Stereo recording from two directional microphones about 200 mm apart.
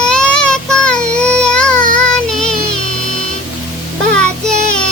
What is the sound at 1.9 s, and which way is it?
Child singing, 5° left (ahead or behind).